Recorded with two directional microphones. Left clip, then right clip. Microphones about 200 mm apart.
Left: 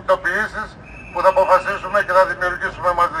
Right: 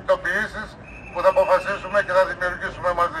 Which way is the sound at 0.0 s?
Centre (ahead or behind).